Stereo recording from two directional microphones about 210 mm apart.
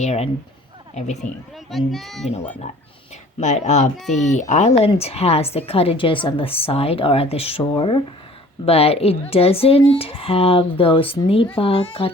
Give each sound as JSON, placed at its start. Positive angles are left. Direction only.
{"t": 0.0, "sound": "a child's voice", "side_deg": 30}
{"t": 1.7, "sound": "speech", "side_deg": 0}
{"t": 3.4, "sound": "a child's voice", "side_deg": 35}
{"t": 3.9, "sound": "speech", "side_deg": 0}
{"t": 4.3, "sound": "a woman's voice", "side_deg": 35}